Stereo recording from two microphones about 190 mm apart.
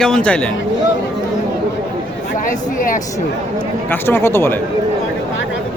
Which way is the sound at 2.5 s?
45° left (ahead or behind).